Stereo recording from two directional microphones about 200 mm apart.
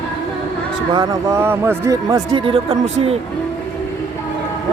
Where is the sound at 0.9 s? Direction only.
15° right (ahead or behind).